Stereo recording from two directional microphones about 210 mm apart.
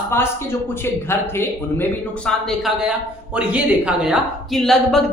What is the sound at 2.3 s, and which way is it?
A man's voice, centre (ahead or behind).